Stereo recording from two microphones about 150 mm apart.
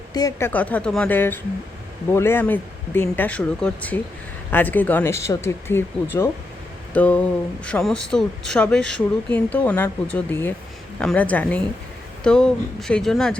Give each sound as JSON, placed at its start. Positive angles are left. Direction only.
{"t": 0.1, "sound": "speech", "side_deg": 25}